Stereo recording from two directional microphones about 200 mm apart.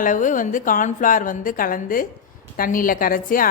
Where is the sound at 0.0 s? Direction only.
40° left (ahead or behind).